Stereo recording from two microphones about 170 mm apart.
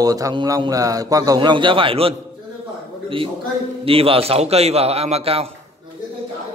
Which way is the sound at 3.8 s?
35° right (ahead or behind).